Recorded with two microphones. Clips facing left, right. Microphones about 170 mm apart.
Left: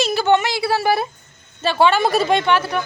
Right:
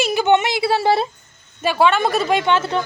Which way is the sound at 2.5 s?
20° right (ahead or behind).